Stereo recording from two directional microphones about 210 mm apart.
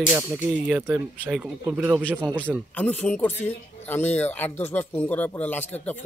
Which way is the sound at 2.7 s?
5° left (ahead or behind).